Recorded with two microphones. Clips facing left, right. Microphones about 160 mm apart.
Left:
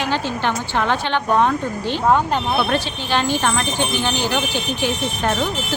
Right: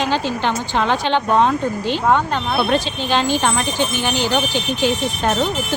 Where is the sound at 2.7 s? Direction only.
15° right (ahead or behind).